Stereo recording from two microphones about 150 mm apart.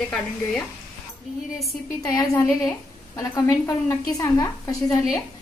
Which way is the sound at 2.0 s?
20° left (ahead or behind).